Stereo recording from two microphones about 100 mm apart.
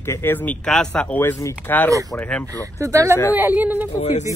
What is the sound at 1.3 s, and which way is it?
Speech, 30° left (ahead or behind).